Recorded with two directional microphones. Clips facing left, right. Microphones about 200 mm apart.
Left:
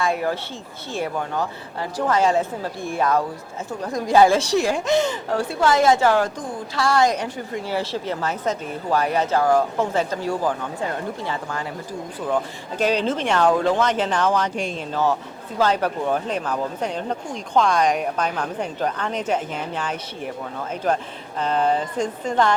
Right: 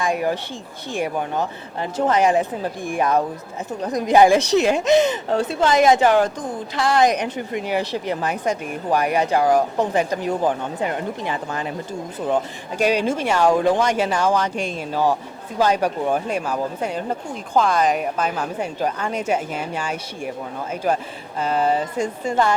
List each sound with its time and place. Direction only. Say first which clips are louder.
0.0 s a woman's voice: right 1 dB; 15° right (ahead or behind)
12.7 s a woman's voice: right 2 dB; 10° right (ahead or behind)